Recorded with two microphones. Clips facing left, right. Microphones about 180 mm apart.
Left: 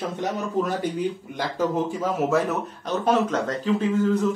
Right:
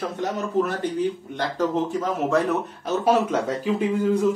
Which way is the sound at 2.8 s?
10° right (ahead or behind).